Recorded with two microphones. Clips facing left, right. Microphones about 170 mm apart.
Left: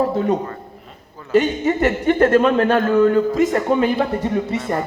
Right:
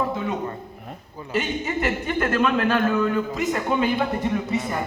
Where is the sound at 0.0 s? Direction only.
35° left (ahead or behind).